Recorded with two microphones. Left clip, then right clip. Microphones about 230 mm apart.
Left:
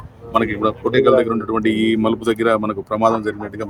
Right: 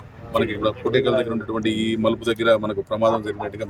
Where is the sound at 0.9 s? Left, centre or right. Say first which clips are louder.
Left 7 dB; left.